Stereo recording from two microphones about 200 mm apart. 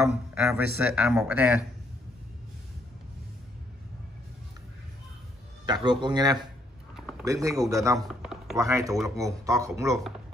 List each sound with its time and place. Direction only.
0.0 s a man's voice: 5° right (ahead or behind)
5.7 s speech: 20° right (ahead or behind)
7.0 s a sound: centre (ahead or behind)
7.2 s speech: 15° right (ahead or behind)
8.1 s a sound: centre (ahead or behind)
8.5 s speech: 15° right (ahead or behind)